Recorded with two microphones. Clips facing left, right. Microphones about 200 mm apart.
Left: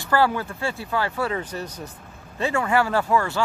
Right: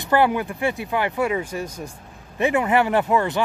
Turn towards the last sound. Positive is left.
turn(degrees=-20)  # may be behind; listen again after turning